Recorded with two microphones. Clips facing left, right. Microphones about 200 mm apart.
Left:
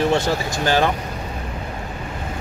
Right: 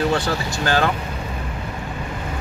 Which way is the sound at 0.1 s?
20° left (ahead or behind).